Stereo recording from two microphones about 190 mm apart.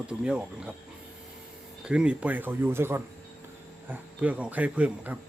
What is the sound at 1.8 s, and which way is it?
Speech, 5° right (ahead or behind).